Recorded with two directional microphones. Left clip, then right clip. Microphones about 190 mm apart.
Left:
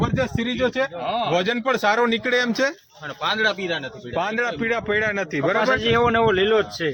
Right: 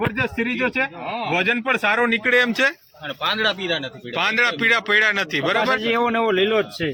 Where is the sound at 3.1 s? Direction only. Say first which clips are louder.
Even; 35° right (ahead or behind).